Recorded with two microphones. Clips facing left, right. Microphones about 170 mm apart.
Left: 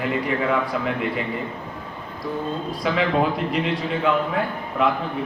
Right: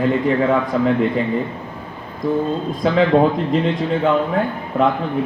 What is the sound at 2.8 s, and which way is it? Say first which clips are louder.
A man's voice: right 7 dB; 35° right (ahead or behind).